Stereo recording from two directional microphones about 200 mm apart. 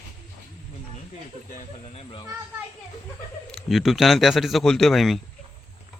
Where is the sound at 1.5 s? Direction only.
35° left (ahead or behind).